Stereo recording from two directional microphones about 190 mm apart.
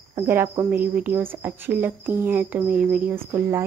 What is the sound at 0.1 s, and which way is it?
A woman's voice, 15° right (ahead or behind).